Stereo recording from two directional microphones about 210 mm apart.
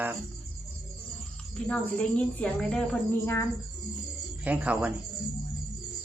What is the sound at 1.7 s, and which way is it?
A woman's voice, 5° left (ahead or behind).